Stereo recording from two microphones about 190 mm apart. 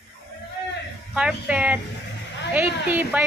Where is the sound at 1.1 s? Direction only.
5° right (ahead or behind).